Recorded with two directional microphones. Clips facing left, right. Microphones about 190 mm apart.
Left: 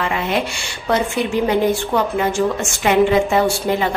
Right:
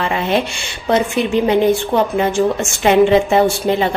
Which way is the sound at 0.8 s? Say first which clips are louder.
Right 3 dB; 20° right (ahead or behind).